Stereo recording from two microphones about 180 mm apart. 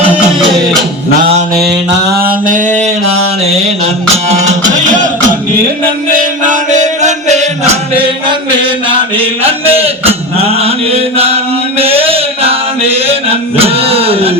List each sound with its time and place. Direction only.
1.6 s mantra: 65° right (ahead or behind); by 2.6 s 50° right (ahead or behind)
4.4 s music: 40° right (ahead or behind)
6.5 s music: 40° right (ahead or behind)
9.1 s mantra: 30° right (ahead or behind)
11.8 s a sound: 35° right (ahead or behind)